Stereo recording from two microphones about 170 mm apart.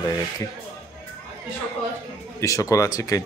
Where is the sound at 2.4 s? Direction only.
20° left (ahead or behind).